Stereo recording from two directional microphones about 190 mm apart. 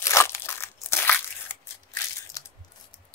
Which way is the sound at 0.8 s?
10° left (ahead or behind).